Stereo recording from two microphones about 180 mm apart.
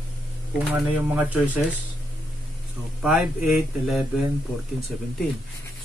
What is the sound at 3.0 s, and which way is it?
A man's voice, centre (ahead or behind).